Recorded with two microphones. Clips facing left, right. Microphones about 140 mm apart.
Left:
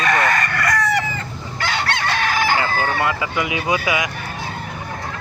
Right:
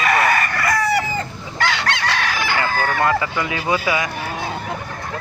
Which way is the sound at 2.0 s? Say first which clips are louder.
Left 2 dB; 50° left (ahead or behind).